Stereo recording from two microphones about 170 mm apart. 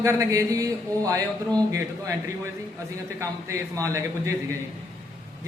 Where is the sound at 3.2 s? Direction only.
15° right (ahead or behind).